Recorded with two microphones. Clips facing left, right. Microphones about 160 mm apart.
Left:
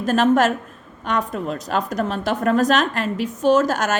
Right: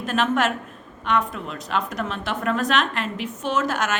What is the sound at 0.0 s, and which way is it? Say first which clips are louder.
A woman's voice: left 6 dB; 40° left (ahead or behind).